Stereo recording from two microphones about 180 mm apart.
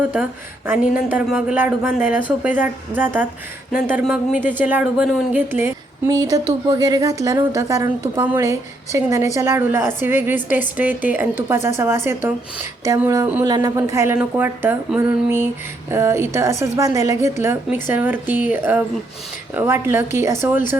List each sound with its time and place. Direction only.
0.7 s speech: 10° right (ahead or behind)
13.0 s speech: 15° right (ahead or behind)